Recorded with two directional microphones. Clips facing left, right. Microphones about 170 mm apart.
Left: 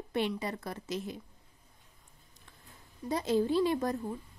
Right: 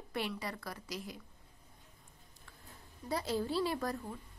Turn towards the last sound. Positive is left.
turn(degrees=20)  # may be behind; listen again after turning